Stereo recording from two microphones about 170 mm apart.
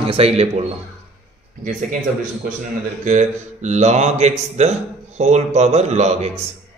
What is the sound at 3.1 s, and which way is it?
A man's voice, 45° right (ahead or behind).